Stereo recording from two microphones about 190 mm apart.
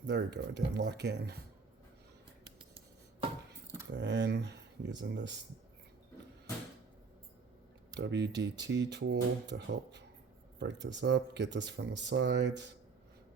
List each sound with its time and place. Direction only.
0.0 s speech: 65° right (ahead or behind)
3.9 s speech: 65° right (ahead or behind)
7.9 s speech: 65° right (ahead or behind)